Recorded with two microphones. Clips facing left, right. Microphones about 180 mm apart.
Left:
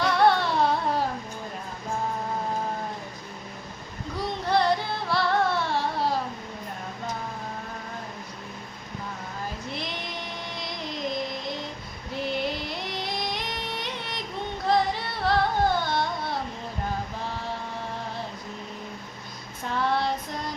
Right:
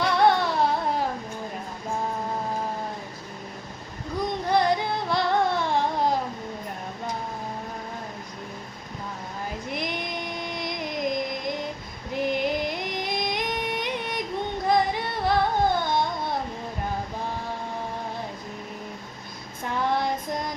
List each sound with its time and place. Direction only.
0.2 s music: 15° right (ahead or behind)
4.2 s music: 15° right (ahead or behind)
9.6 s female singing: 15° right (ahead or behind)
12.1 s a sound: 15° right (ahead or behind)
14.7 s music: 15° right (ahead or behind)
19.7 s child singing: 15° right (ahead or behind)